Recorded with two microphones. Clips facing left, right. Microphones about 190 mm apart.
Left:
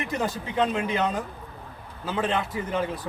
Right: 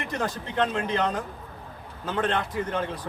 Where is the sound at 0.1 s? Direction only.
5° left (ahead or behind).